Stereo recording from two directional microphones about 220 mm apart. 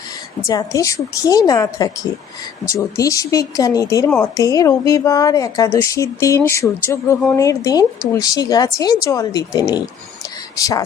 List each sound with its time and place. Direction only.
0.4 s a woman's voice: 15° left (ahead or behind)